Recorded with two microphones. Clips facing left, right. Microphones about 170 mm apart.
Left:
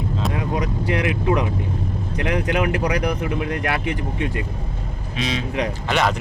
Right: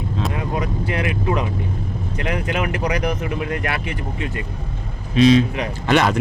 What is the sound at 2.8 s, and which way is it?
Speech, 10° right (ahead or behind).